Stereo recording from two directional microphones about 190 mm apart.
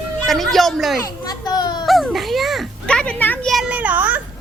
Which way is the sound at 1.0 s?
20° left (ahead or behind).